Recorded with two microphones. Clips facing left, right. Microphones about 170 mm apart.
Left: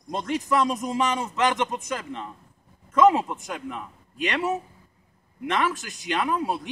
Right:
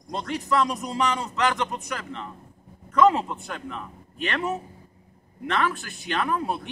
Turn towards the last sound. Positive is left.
turn(degrees=15)  # may be behind; listen again after turning